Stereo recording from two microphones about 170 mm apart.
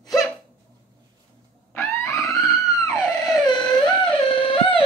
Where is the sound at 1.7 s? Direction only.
15° left (ahead or behind).